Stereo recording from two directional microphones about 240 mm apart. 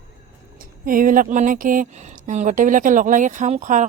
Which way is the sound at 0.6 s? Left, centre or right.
Right.